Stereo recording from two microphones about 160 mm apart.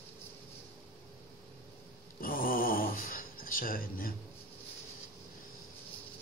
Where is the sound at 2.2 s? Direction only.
65° left (ahead or behind).